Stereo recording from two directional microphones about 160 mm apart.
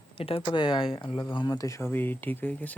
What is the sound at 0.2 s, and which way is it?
Speech, 35° left (ahead or behind).